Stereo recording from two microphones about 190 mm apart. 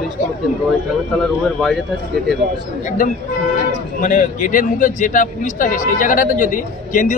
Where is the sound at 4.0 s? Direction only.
45° left (ahead or behind).